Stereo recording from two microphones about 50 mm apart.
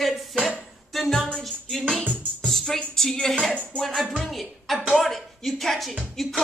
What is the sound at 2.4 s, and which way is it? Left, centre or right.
Speech, centre.